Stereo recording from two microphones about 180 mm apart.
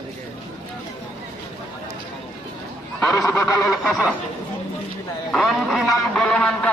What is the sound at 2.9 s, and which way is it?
Goose, centre (ahead or behind).